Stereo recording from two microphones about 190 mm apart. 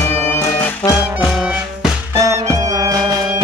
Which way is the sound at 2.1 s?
15° right (ahead or behind).